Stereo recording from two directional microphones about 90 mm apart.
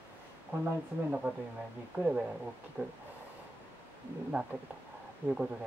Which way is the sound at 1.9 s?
20° right (ahead or behind).